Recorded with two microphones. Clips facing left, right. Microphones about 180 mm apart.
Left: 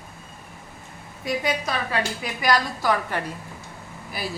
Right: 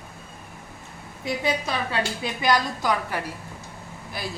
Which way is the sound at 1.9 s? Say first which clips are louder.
Even; 25° right (ahead or behind).